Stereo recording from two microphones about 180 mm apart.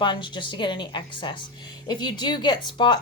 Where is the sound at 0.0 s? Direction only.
25° left (ahead or behind).